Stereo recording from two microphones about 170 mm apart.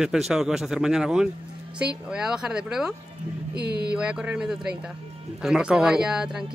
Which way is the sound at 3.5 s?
70° right (ahead or behind).